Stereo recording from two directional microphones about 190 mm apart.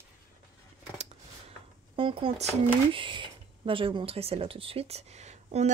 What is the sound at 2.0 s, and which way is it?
Speech, 30° right (ahead or behind).